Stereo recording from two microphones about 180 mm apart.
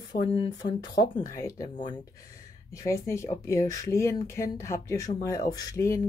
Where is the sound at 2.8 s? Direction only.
15° left (ahead or behind).